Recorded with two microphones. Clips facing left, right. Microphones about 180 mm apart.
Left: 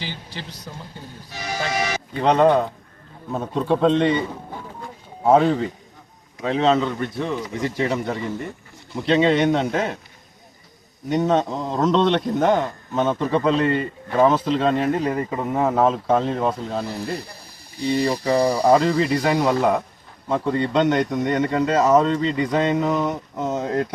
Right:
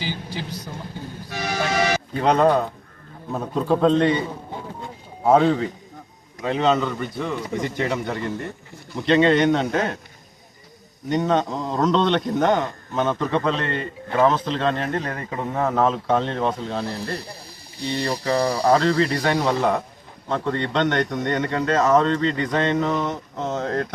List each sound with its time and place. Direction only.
0.0 s a sound: 5° right (ahead or behind)
2.1 s speech: centre (ahead or behind)
5.2 s speech: centre (ahead or behind)
11.1 s a man's voice: 5° left (ahead or behind)